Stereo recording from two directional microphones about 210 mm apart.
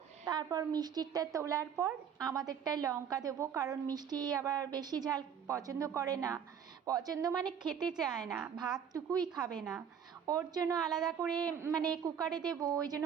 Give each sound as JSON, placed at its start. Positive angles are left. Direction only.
{"t": 0.3, "sound": "a woman's voice", "side_deg": -20}